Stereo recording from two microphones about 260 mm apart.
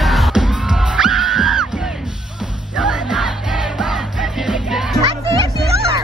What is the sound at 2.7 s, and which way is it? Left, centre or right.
Music, centre.